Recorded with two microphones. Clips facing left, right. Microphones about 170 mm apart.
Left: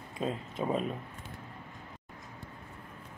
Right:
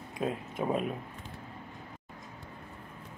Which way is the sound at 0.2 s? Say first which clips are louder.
Right 1 dB; 10° right (ahead or behind).